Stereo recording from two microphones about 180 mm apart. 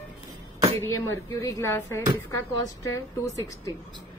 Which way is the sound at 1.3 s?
15° left (ahead or behind).